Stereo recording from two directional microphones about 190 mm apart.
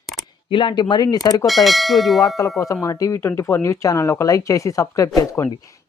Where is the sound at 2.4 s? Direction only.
20° left (ahead or behind).